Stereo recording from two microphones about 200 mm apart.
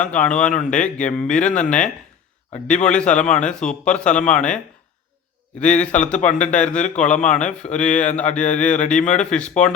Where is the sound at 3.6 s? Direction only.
40° left (ahead or behind).